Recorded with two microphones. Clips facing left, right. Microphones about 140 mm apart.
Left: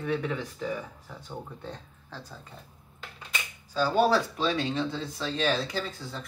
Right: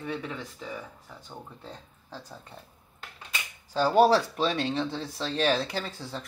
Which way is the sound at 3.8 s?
35° right (ahead or behind).